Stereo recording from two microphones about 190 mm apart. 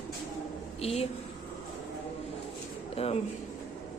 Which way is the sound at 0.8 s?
30° left (ahead or behind).